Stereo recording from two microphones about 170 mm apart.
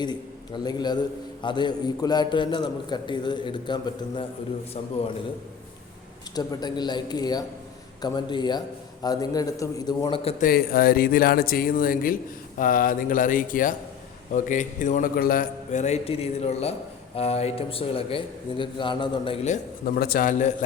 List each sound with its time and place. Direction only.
0.0 s a man's voice: 25° left (ahead or behind)
6.3 s a man's voice: 25° left (ahead or behind)
10.4 s a man's voice: 60° left (ahead or behind); by 19.5 s 35° left (ahead or behind)
19.8 s speech: 60° left (ahead or behind)